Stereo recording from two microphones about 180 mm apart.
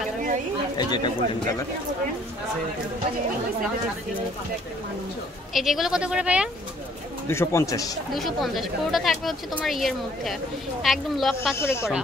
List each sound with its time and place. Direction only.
0.7 s speech: 25° left (ahead or behind)
5.5 s speech: centre (ahead or behind)
7.2 s a man's voice: 15° left (ahead or behind)
8.1 s speech: centre (ahead or behind)
11.5 s a man's voice: 15° left (ahead or behind)